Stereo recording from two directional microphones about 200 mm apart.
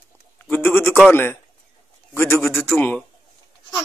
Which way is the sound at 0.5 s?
10° left (ahead or behind).